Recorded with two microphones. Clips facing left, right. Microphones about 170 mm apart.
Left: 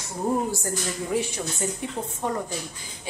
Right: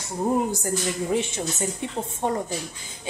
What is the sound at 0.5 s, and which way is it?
Speech, 20° right (ahead or behind).